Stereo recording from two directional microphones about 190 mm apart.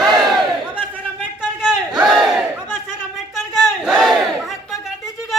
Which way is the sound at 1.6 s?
5° right (ahead or behind).